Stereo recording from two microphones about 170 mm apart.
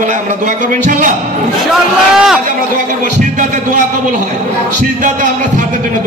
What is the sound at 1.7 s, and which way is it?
Speech, centre (ahead or behind).